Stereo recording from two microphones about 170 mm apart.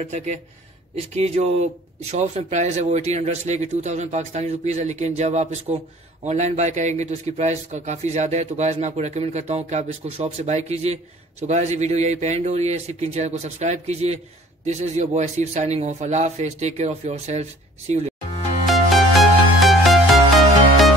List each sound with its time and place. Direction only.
0.9 s a man's voice: 40° right (ahead or behind)
18.7 s music: centre (ahead or behind)